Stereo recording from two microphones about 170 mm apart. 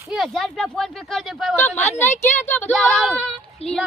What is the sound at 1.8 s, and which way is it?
Speech, 15° left (ahead or behind).